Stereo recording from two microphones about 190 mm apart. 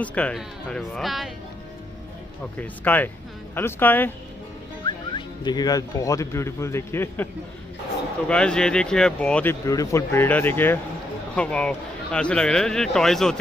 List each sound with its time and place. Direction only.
0.0 s speech: 5° left (ahead or behind)
2.5 s speech: 10° left (ahead or behind)
4.8 s speech: 25° left (ahead or behind)
8.3 s speech: 5° left (ahead or behind)